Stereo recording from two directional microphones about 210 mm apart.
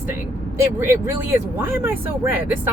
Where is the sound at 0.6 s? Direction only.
15° right (ahead or behind).